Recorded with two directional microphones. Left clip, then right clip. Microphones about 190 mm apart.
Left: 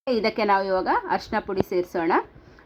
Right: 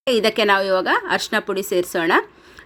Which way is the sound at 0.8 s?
20° right (ahead or behind).